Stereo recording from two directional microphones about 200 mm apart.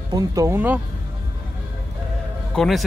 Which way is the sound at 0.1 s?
15° right (ahead or behind).